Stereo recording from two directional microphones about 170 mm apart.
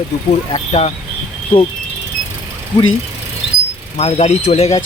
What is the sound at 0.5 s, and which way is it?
Speech, 40° left (ahead or behind).